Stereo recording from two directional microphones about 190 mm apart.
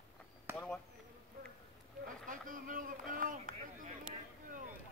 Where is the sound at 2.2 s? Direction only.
45° right (ahead or behind).